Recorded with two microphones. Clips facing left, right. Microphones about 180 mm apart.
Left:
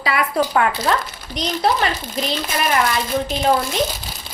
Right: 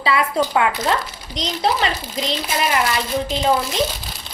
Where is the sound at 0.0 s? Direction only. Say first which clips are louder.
Right 1 dB; 25° right (ahead or behind).